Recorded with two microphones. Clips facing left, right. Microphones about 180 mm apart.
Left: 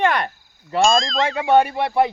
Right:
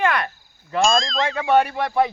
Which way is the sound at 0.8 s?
Centre (ahead or behind).